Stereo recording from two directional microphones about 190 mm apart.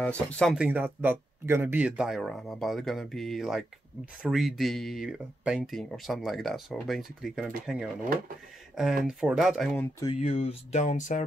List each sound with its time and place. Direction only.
0.0 s speech: 5° left (ahead or behind)
0.7 s speech: 10° right (ahead or behind)
9.0 s speech: 5° right (ahead or behind)
10.0 s speech: 35° left (ahead or behind)